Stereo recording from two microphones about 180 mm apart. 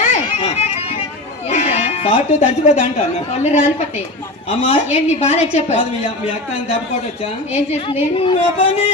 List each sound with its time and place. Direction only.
0.1 s music: 35° left (ahead or behind)
3.4 s a woman's voice: 35° left (ahead or behind)
8.0 s a woman's voice: 30° left (ahead or behind)